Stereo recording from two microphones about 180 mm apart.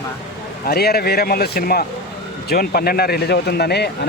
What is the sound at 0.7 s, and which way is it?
Speech, 60° left (ahead or behind).